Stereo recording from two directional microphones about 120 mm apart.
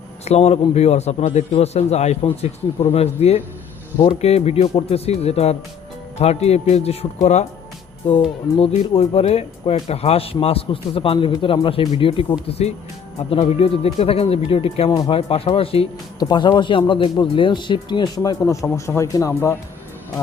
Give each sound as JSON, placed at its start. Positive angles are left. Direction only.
{"t": 0.3, "sound": "speech", "side_deg": 60}
{"t": 1.5, "sound": "speech", "side_deg": 60}
{"t": 8.5, "sound": "speech", "side_deg": 55}
{"t": 12.5, "sound": "speech", "side_deg": 60}
{"t": 14.8, "sound": "speech", "side_deg": 30}
{"t": 15.1, "sound": "speech", "side_deg": 50}
{"t": 16.1, "sound": "speech", "side_deg": 35}